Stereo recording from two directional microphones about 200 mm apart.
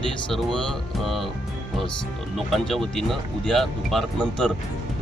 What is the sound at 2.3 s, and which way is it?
Speech, centre (ahead or behind).